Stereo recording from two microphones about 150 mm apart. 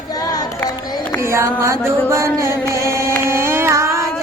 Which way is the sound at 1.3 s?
15° right (ahead or behind).